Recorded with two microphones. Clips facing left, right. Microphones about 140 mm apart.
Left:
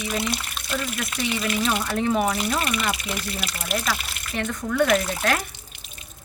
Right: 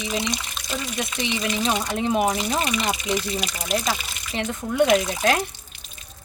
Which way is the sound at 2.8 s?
5° left (ahead or behind).